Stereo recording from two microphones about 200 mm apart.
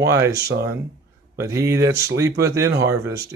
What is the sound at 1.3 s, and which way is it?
A man's voice, 15° right (ahead or behind).